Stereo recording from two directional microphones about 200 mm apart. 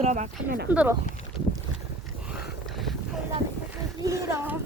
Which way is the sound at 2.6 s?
Centre (ahead or behind).